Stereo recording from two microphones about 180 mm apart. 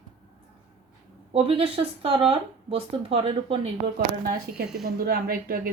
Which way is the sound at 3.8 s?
60° right (ahead or behind).